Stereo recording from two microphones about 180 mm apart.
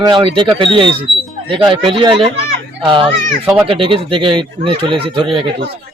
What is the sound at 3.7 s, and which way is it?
Speech, 30° right (ahead or behind).